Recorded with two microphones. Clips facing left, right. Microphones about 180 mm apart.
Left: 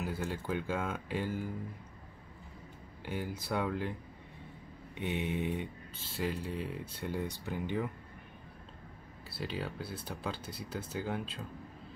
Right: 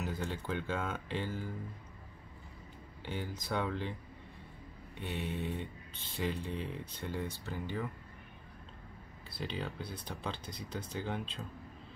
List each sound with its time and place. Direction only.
0.0 s speech: 10° left (ahead or behind)
3.1 s speech: 10° left (ahead or behind)
4.9 s speech: 15° left (ahead or behind)
9.3 s speech: 5° left (ahead or behind)